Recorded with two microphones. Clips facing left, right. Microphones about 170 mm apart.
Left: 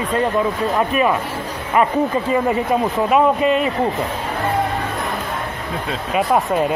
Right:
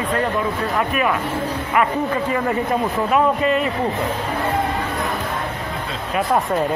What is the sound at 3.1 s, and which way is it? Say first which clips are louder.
Speech: left 2 dB; 20° left (ahead or behind).